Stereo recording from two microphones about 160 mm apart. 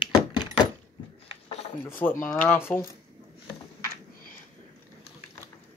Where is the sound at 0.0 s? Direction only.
25° left (ahead or behind).